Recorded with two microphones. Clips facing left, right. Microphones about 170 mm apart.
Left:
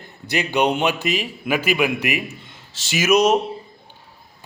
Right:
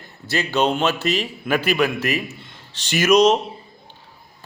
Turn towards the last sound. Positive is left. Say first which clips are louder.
# right 2 dB
turn(degrees=10)  # may be behind; listen again after turning